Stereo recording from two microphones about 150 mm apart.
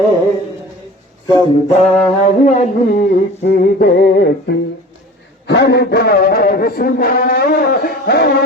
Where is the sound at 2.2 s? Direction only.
55° left (ahead or behind).